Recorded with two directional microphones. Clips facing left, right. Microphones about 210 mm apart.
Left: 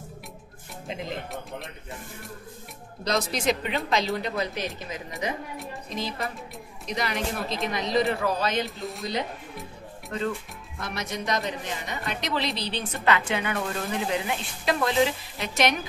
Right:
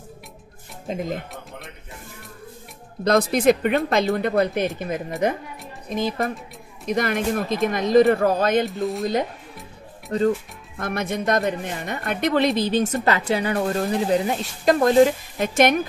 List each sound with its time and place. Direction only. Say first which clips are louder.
0.8 s speech: right 7 dB; 45° right (ahead or behind)
3.0 s a woman's voice: right 8 dB; 55° right (ahead or behind)
8.8 s speech: right 9 dB; centre (ahead or behind)
10.1 s speech: right 9 dB; 35° right (ahead or behind)
10.8 s a woman's voice: right 7 dB; 50° right (ahead or behind)